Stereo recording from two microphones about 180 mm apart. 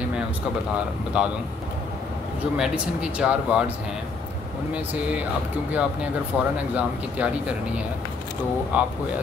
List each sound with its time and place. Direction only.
1.1 s speech: 5° right (ahead or behind)
2.5 s speech: 5° right (ahead or behind)
6.3 s speech: centre (ahead or behind)